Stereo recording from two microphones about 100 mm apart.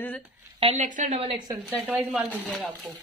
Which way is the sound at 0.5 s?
75° right (ahead or behind).